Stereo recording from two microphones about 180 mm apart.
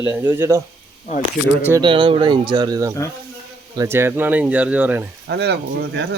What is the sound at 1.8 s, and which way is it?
Speech, 30° right (ahead or behind).